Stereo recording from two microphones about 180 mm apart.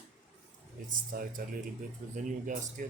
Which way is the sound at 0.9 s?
50° right (ahead or behind).